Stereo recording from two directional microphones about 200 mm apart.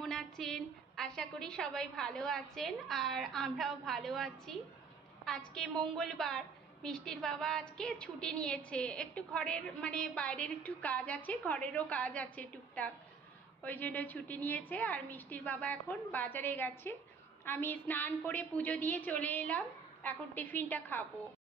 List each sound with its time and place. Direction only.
0.0 s a woman's voice: centre (ahead or behind)